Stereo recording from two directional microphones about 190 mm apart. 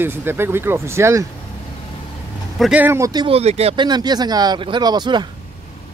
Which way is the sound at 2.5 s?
5° right (ahead or behind).